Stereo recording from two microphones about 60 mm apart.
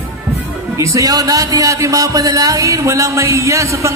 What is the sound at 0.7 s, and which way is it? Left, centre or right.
Speech, right.